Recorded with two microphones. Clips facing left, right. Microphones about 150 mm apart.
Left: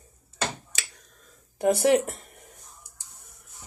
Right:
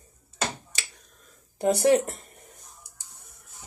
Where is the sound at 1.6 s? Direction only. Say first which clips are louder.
Even; 15° left (ahead or behind).